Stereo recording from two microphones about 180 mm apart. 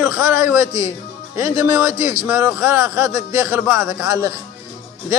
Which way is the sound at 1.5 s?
10° right (ahead or behind).